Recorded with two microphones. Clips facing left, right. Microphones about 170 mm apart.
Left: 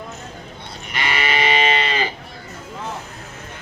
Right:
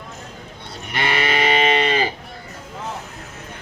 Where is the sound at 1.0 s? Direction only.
50° right (ahead or behind).